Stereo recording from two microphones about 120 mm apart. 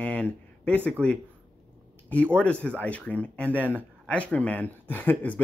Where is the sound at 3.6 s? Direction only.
15° right (ahead or behind).